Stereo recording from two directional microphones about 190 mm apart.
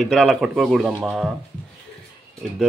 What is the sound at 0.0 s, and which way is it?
Speech, centre (ahead or behind).